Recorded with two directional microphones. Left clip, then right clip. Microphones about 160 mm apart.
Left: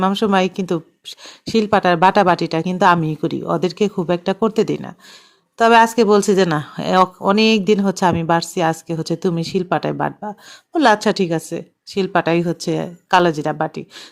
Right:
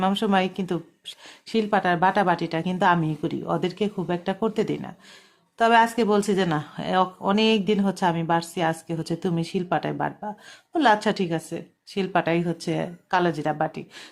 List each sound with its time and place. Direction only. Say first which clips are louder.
0.0 s speech: left 6 dB; 35° left (ahead or behind)
13.1 s speech: left 9 dB; 45° left (ahead or behind)
13.3 s speech: left 5 dB; 30° left (ahead or behind)